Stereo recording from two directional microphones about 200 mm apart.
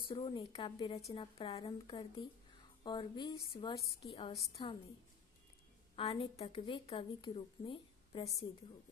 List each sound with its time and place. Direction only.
0.0 s a woman's voice: 25° left (ahead or behind)
5.9 s a woman's voice: 30° left (ahead or behind)